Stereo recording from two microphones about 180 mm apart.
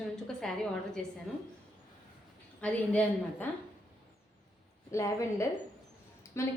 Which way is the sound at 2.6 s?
10° left (ahead or behind).